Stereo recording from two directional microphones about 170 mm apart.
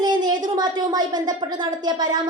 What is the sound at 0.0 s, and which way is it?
A woman's voice, 25° right (ahead or behind).